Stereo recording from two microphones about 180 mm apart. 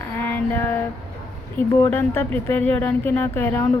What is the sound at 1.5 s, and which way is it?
Speech, 10° left (ahead or behind).